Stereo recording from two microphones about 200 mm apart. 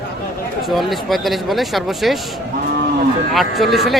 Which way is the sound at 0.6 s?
Centre (ahead or behind).